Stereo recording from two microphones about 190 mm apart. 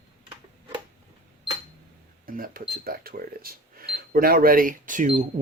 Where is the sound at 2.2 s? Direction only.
50° right (ahead or behind).